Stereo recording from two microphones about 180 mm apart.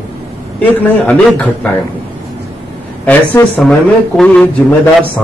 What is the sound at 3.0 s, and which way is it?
A man's voice, 10° left (ahead or behind).